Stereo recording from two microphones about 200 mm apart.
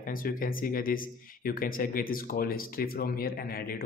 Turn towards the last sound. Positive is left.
turn(degrees=45)  # may be behind; listen again after turning